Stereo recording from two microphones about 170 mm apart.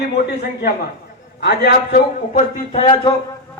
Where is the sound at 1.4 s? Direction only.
75° left (ahead or behind).